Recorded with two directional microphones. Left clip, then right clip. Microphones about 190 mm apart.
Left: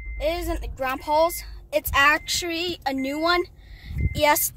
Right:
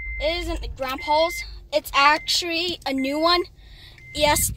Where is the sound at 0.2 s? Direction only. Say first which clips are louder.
Even; 5° left (ahead or behind); by 3.9 s 15° right (ahead or behind).